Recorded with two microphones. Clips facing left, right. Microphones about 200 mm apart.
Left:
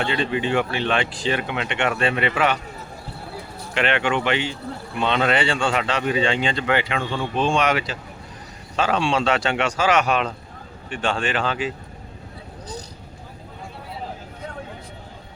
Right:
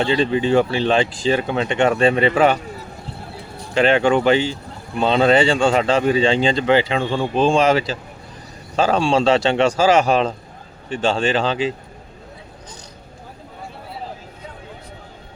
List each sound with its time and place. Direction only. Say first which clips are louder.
0.0 s speech: right 5 dB; 30° right (ahead or behind)
3.8 s speech: right 7 dB; 35° right (ahead or behind)